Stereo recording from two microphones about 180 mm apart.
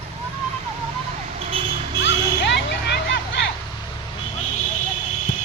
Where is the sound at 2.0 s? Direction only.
75° left (ahead or behind).